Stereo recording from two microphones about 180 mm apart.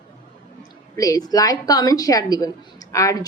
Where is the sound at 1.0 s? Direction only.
20° left (ahead or behind).